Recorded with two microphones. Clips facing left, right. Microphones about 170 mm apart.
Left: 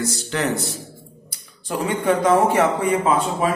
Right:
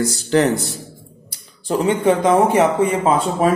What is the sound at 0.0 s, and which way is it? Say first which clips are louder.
Speech: right 8 dB; 35° right (ahead or behind).